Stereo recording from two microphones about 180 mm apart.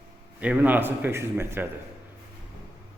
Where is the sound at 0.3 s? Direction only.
10° right (ahead or behind).